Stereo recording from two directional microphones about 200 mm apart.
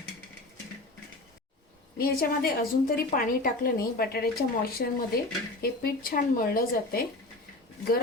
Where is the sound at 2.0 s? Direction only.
50° left (ahead or behind).